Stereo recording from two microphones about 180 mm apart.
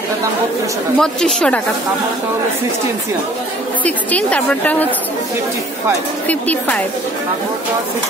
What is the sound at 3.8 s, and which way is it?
A woman's voice, 10° left (ahead or behind).